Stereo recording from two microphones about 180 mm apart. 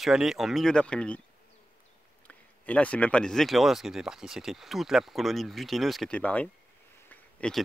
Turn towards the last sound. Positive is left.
turn(degrees=5)  # may be behind; listen again after turning